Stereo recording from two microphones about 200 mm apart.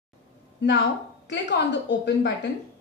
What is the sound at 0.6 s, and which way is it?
A woman's voice, 60° left (ahead or behind).